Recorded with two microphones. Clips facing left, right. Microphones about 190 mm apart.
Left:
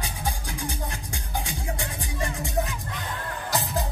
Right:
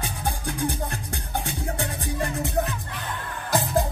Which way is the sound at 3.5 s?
55° right (ahead or behind).